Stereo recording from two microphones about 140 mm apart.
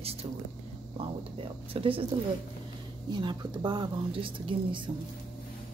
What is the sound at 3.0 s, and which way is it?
A woman's voice, 30° right (ahead or behind).